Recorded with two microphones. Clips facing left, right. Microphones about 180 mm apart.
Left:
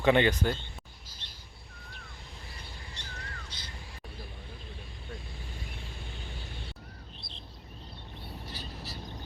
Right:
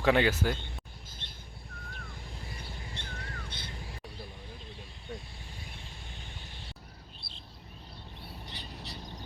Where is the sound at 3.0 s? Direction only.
55° right (ahead or behind).